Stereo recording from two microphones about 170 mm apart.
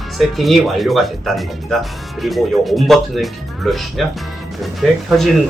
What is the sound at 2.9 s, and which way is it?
Speech, centre (ahead or behind).